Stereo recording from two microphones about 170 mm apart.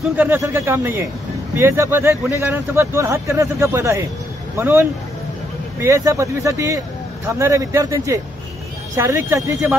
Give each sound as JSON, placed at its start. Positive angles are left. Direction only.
{"t": 0.1, "sound": "speech", "side_deg": -10}